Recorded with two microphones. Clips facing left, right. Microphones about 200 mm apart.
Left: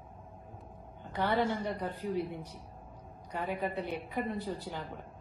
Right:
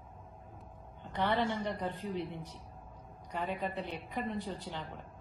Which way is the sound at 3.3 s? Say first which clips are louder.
Left 2 dB; centre (ahead or behind).